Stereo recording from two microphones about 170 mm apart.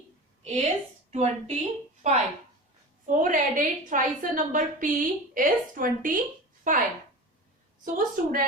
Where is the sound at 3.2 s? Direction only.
50° right (ahead or behind).